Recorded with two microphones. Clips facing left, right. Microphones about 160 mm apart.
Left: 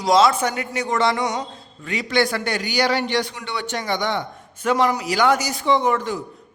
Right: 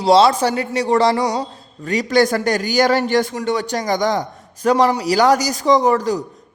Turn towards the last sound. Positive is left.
turn(degrees=-40)  # may be behind; listen again after turning